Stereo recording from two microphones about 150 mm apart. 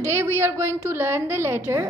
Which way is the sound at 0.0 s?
15° right (ahead or behind).